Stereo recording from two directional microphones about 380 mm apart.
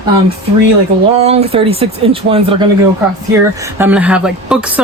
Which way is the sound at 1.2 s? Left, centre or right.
Centre.